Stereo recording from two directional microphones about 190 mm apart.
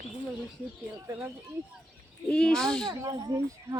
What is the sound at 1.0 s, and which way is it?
Speech, 15° right (ahead or behind).